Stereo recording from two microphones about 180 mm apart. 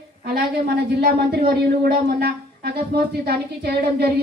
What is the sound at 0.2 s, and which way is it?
A woman's voice, 60° right (ahead or behind).